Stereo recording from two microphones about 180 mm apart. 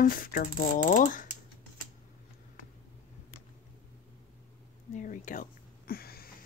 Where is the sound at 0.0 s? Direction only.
50° left (ahead or behind).